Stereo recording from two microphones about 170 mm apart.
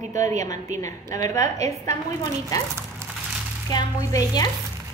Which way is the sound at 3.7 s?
20° left (ahead or behind).